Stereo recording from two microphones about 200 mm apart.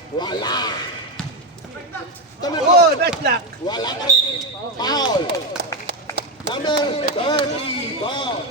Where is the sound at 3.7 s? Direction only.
20° left (ahead or behind).